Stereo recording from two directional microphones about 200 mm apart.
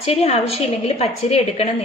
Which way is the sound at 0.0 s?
30° left (ahead or behind).